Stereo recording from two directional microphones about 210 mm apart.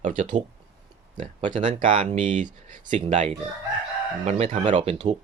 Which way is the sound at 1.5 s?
35° right (ahead or behind).